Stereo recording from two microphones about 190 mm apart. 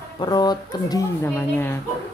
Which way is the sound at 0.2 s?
20° left (ahead or behind).